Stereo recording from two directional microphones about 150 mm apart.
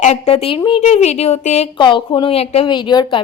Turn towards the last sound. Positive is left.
turn(degrees=30)  # may be behind; listen again after turning